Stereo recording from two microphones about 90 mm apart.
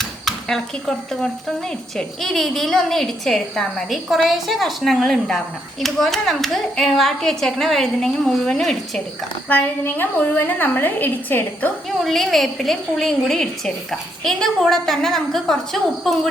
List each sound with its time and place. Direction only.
0.0 s speech: 5° left (ahead or behind)
9.5 s a woman's voice: 20° left (ahead or behind)
12.0 s speech: centre (ahead or behind)